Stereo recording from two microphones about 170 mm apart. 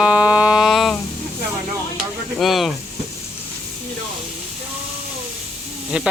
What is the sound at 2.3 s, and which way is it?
Hiss, centre (ahead or behind).